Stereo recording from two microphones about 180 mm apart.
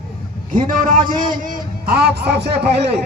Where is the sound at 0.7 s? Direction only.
45° right (ahead or behind).